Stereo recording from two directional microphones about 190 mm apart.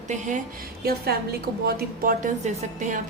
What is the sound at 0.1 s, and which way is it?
Speech, 40° right (ahead or behind).